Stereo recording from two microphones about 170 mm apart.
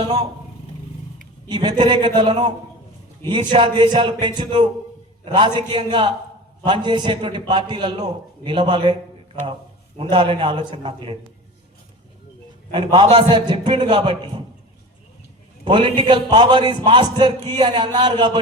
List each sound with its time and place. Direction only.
0.0 s speech: 25° right (ahead or behind)
1.5 s a man's voice: 25° right (ahead or behind)
12.7 s a man's voice: 30° right (ahead or behind)
15.6 s a man's voice: 30° right (ahead or behind)